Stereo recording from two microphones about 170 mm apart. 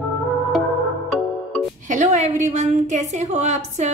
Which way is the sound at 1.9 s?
45° right (ahead or behind).